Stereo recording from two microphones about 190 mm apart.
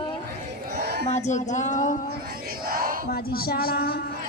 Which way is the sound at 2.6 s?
50° right (ahead or behind).